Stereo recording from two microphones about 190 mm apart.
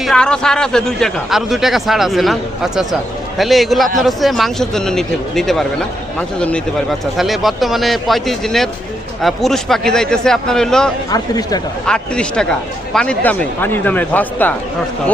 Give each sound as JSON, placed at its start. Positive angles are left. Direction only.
{"t": 0.0, "sound": "a man's voice", "side_deg": 5}
{"t": 11.1, "sound": "speech", "side_deg": 20}
{"t": 11.9, "sound": "a man's voice", "side_deg": 5}